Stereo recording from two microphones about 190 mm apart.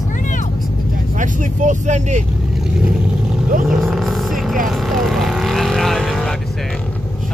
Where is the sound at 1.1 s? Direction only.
40° right (ahead or behind).